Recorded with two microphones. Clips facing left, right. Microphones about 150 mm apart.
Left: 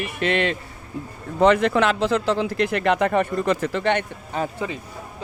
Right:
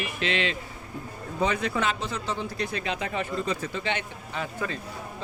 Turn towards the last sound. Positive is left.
turn(degrees=40)  # may be behind; listen again after turning